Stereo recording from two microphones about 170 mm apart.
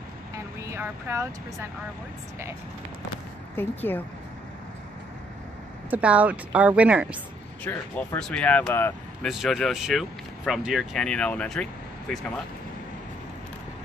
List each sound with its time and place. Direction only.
0.6 s speech: 15° right (ahead or behind)
3.5 s speech: 10° left (ahead or behind)
5.9 s a woman's voice: 10° right (ahead or behind)
7.6 s speech: 10° left (ahead or behind)